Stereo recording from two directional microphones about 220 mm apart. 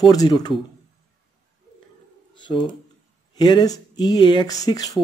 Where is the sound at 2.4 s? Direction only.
20° left (ahead or behind).